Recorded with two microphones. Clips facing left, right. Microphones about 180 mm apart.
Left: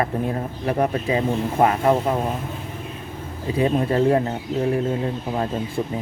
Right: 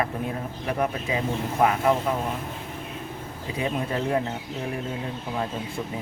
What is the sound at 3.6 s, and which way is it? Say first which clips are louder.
Speech: left 8 dB; 40° left (ahead or behind).